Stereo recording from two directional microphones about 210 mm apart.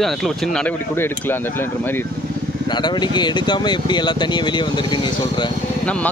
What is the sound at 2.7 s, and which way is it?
Speech, 20° left (ahead or behind).